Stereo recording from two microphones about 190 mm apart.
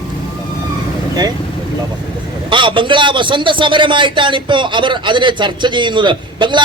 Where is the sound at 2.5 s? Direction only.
25° right (ahead or behind).